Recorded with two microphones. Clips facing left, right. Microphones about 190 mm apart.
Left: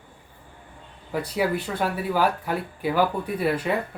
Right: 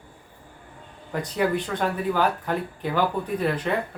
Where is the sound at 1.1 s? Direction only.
5° left (ahead or behind).